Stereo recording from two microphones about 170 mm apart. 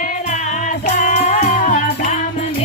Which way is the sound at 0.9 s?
45° left (ahead or behind).